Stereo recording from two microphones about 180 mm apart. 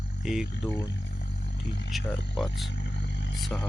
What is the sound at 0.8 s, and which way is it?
Wild animals, 75° left (ahead or behind).